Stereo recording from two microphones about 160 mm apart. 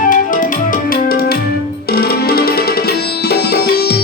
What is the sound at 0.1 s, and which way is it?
Music, 55° left (ahead or behind).